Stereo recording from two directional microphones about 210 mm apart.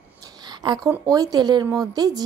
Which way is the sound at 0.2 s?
20° right (ahead or behind).